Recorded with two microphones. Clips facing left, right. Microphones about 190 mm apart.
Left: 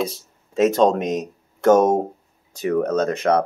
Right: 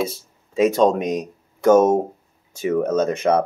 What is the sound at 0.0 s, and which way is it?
Speech, centre (ahead or behind).